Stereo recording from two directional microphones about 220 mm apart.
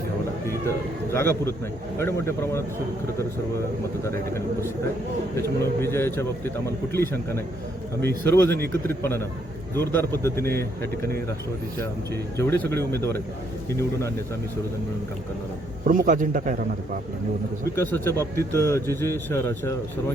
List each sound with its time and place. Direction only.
1.1 s speech: 10° left (ahead or behind)
4.0 s speech: 10° left (ahead or behind)
12.4 s speech: 10° left (ahead or behind)
15.9 s a man's voice: 35° right (ahead or behind)
17.7 s speech: 10° left (ahead or behind)